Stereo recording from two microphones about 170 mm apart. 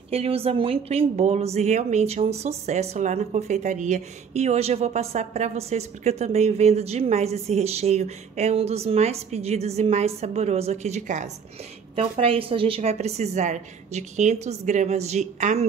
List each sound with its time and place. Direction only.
0.1 s a woman's voice: 35° right (ahead or behind)
11.9 s a woman's voice: 35° right (ahead or behind)